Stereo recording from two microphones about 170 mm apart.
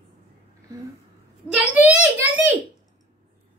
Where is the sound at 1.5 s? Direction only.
10° right (ahead or behind).